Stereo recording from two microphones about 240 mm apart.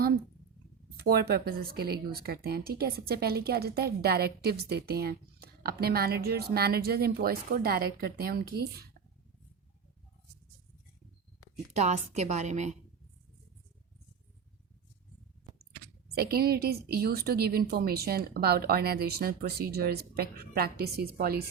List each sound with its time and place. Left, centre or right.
0.9 s a woman's voice: right
11.7 s a woman's voice: right
16.1 s a woman's voice: right